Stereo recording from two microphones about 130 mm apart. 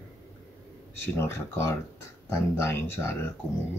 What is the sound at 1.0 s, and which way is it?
Speech, 20° left (ahead or behind).